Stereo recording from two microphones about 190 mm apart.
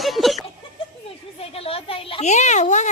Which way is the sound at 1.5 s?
30° left (ahead or behind).